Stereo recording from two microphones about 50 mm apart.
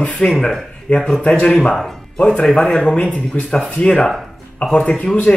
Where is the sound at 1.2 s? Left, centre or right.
Left.